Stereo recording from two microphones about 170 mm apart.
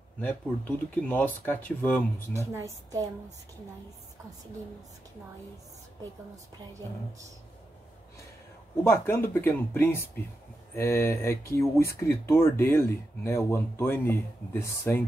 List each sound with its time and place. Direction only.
0.2 s speech: 10° left (ahead or behind)
2.5 s a woman's voice: 20° right (ahead or behind)
8.8 s speech: 15° left (ahead or behind)